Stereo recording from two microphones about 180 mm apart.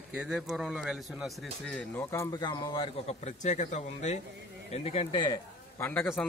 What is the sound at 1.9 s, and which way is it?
A man's voice, 15° left (ahead or behind).